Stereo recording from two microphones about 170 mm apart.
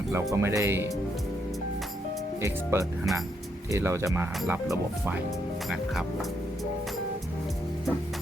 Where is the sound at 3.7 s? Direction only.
15° right (ahead or behind).